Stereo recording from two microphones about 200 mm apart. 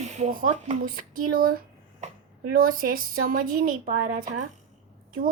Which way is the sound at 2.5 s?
45° right (ahead or behind).